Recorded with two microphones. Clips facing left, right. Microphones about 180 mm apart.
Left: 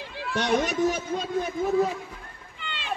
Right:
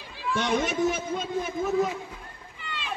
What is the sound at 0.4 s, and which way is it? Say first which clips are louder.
Speech: left 2 dB; 40° left (ahead or behind).